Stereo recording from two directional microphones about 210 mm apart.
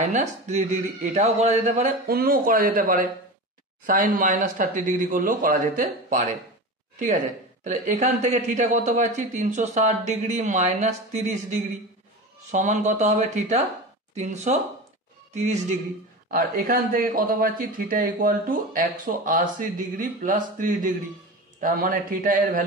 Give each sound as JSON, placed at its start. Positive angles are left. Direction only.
{"t": 0.1, "sound": "a man's voice", "side_deg": -35}
{"t": 2.0, "sound": "a man's voice", "side_deg": -45}
{"t": 7.6, "sound": "a man's voice", "side_deg": -35}
{"t": 16.3, "sound": "a man's voice", "side_deg": -45}